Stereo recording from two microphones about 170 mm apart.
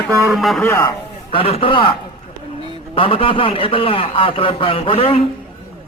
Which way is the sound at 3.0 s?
30° left (ahead or behind).